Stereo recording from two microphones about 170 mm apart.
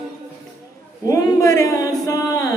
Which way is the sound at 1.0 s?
20° left (ahead or behind).